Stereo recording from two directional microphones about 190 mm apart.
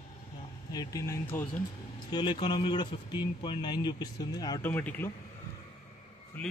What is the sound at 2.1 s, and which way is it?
Speech, 25° left (ahead or behind).